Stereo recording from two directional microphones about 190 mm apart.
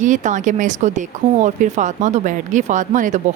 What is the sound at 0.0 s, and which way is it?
Speech, 40° right (ahead or behind).